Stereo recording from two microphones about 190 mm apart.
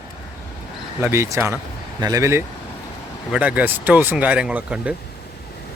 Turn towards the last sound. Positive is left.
turn(degrees=-5)  # may be behind; listen again after turning